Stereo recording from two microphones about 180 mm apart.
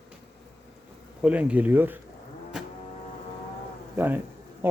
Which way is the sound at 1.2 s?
5° right (ahead or behind).